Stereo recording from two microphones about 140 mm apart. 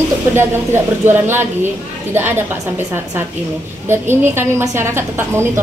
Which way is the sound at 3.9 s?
15° right (ahead or behind).